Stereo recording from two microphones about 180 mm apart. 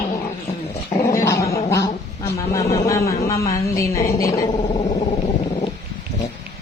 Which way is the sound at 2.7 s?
15° left (ahead or behind).